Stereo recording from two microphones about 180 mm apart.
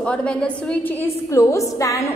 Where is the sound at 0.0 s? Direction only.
5° left (ahead or behind).